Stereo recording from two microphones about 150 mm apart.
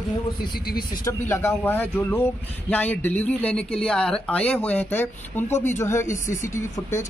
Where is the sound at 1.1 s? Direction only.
15° left (ahead or behind).